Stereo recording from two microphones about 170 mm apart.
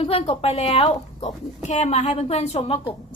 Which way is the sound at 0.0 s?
35° left (ahead or behind).